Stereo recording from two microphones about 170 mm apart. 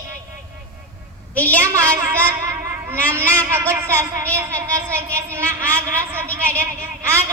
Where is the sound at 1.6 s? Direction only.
15° right (ahead or behind).